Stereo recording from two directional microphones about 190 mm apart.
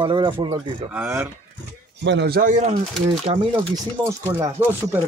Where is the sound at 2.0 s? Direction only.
60° right (ahead or behind); by 3.4 s 35° right (ahead or behind).